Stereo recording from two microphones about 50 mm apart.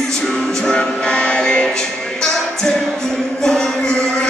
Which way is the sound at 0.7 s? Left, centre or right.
Left.